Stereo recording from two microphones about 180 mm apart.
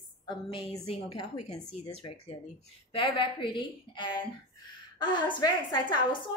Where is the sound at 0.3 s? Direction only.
25° left (ahead or behind).